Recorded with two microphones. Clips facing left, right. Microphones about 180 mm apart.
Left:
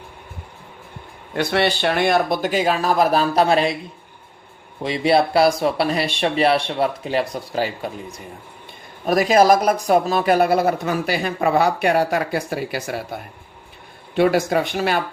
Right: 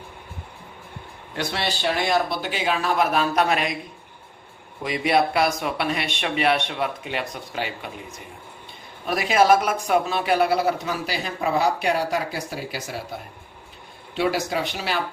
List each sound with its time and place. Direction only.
1.4 s speech: 60° left (ahead or behind); by 3.8 s 30° left (ahead or behind)
4.8 s speech: 30° left (ahead or behind); by 13.0 s 60° left (ahead or behind)
14.2 s speech: 55° left (ahead or behind)